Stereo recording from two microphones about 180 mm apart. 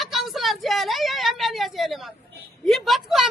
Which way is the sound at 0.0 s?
Centre (ahead or behind).